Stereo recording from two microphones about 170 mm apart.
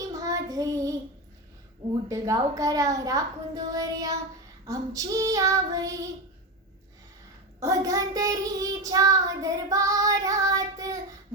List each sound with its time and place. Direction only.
0.1 s child singing: 20° right (ahead or behind)
2.0 s child singing: 20° right (ahead or behind)
7.6 s child singing: 20° right (ahead or behind)